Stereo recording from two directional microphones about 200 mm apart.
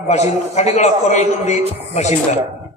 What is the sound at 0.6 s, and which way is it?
A man's voice, 35° left (ahead or behind).